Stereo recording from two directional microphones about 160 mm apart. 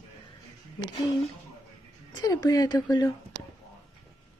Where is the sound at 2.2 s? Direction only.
25° left (ahead or behind).